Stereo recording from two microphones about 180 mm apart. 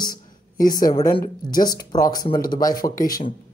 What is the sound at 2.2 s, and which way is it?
Speech, 55° left (ahead or behind).